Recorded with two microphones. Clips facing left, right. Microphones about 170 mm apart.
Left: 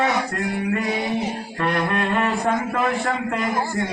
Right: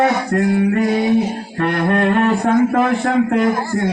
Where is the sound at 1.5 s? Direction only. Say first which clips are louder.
Right 6 dB; 55° right (ahead or behind).